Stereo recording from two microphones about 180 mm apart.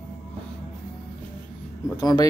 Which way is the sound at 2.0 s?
20° left (ahead or behind).